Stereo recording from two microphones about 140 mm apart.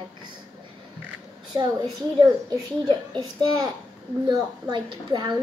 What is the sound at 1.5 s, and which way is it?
Speech, 25° right (ahead or behind).